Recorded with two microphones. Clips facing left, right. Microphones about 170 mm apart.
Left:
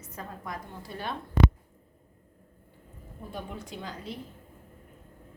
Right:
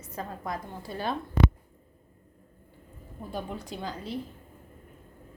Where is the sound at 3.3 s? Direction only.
35° right (ahead or behind).